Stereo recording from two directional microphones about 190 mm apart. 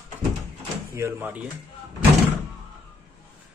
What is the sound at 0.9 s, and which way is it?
Speech, 15° right (ahead or behind).